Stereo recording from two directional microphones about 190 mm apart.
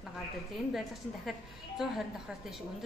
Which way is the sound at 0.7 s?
Centre (ahead or behind).